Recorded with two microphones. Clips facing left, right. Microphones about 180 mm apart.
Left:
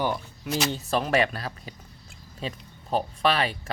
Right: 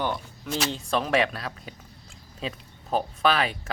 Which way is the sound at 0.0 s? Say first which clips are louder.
Left 1 dB; 5° left (ahead or behind).